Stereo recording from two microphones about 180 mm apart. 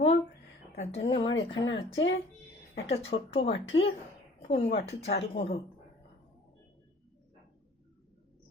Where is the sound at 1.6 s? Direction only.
90° left.